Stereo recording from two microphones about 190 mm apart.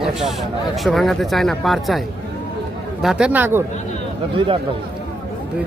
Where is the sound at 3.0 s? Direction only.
5° right (ahead or behind).